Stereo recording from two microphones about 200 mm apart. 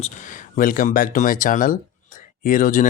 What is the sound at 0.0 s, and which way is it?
Speech, 40° left (ahead or behind).